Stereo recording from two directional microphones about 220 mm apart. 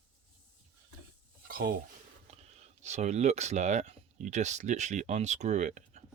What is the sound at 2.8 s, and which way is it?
Speech, 30° right (ahead or behind).